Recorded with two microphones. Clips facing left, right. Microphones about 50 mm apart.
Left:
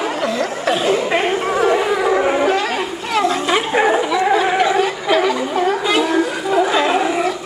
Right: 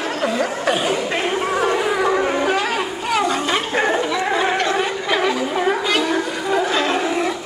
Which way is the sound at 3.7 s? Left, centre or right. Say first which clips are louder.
Left 5 dB; centre.